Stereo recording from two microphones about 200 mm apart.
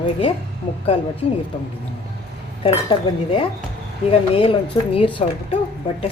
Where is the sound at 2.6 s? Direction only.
25° left (ahead or behind).